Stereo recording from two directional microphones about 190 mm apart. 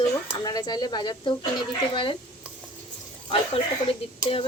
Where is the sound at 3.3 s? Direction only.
30° left (ahead or behind).